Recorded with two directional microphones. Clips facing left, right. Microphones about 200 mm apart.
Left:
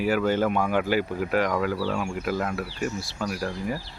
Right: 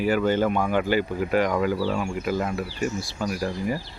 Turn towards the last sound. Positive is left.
turn(degrees=0)  # may be behind; listen again after turning